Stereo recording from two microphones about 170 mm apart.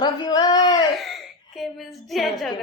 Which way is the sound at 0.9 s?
Centre (ahead or behind).